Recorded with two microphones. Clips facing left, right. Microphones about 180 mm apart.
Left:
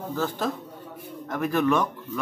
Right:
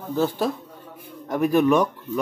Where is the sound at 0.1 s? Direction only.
15° right (ahead or behind).